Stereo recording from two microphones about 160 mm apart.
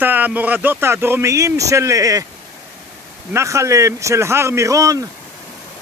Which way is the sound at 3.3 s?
20° right (ahead or behind).